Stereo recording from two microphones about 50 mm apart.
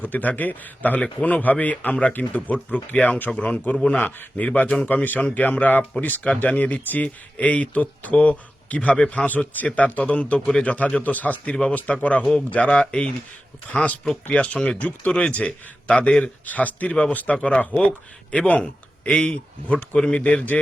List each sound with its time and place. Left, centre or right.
0.0 s speech: left
3.8 s speech: left
14.8 s speech: left
15.3 s speech: left